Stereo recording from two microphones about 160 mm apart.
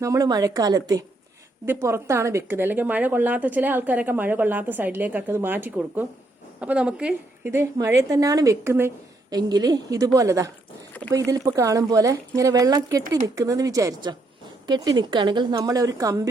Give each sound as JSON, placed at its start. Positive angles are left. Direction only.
{"t": 0.0, "sound": "a woman's voice", "side_deg": -20}